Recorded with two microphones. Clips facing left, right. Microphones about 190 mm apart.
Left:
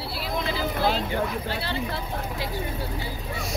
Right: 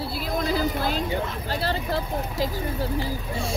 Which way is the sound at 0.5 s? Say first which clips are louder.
Left 2 dB; 45° right (ahead or behind).